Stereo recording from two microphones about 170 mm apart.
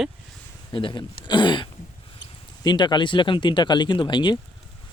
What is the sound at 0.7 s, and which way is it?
Speech, 30° left (ahead or behind).